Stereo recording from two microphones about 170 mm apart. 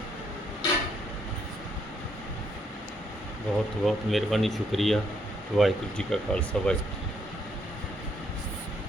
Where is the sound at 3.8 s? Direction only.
Centre (ahead or behind).